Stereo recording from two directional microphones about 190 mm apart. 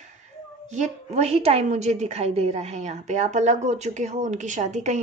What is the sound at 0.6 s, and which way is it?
A woman's voice, 40° right (ahead or behind).